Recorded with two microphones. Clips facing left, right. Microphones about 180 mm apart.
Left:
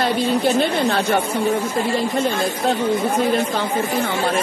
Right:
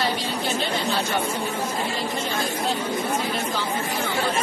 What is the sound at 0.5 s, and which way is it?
Speech, 60° left (ahead or behind).